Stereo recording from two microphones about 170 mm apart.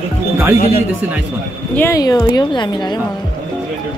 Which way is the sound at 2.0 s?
20° left (ahead or behind).